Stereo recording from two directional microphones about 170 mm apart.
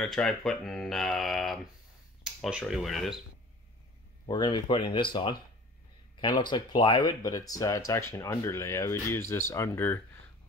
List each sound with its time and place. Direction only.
0.0 s speech: centre (ahead or behind)
4.3 s speech: 25° left (ahead or behind)